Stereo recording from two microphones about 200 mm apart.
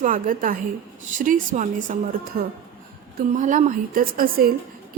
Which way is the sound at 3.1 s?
40° right (ahead or behind).